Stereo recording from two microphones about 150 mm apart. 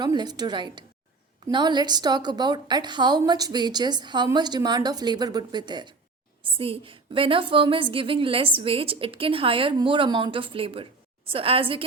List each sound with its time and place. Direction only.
0.0 s a woman's voice: 30° right (ahead or behind)